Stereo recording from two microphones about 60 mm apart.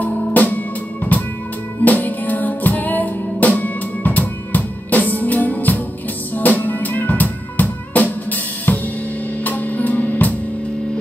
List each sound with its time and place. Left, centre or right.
0.0 s music: left